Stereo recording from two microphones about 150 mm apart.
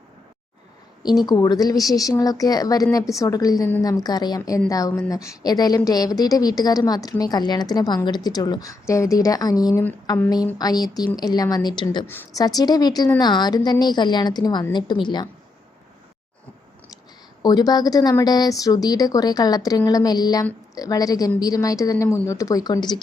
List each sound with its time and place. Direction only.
1.0 s a woman's voice: 30° left (ahead or behind)
12.0 s a woman's voice: 15° left (ahead or behind)
12.3 s a woman's voice: 25° left (ahead or behind)
17.4 s a woman's voice: 25° left (ahead or behind)